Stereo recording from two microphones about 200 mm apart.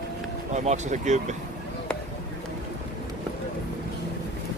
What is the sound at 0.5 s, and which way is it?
Speech, 35° right (ahead or behind).